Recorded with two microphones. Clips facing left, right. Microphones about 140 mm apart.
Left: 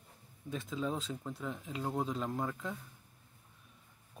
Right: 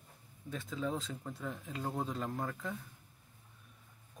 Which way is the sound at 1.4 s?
Centre (ahead or behind).